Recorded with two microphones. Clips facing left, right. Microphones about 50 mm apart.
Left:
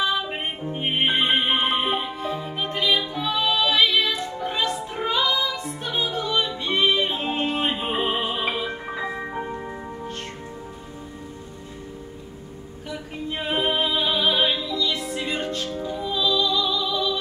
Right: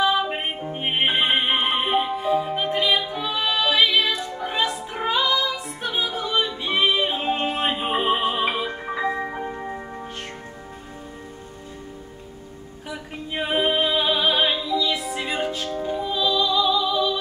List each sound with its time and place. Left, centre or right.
0.3 s music: centre
3.3 s music: right
3.6 s music: centre
13.3 s music: centre
14.2 s music: right
14.5 s music: centre
15.7 s music: right
16.0 s music: centre
16.3 s music: right